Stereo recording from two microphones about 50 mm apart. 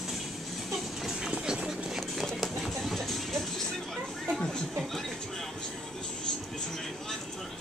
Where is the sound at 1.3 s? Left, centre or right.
Centre.